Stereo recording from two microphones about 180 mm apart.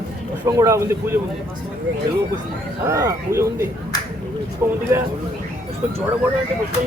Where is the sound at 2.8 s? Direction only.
15° right (ahead or behind).